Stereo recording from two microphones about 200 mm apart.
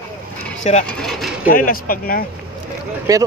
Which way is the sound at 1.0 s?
Centre (ahead or behind).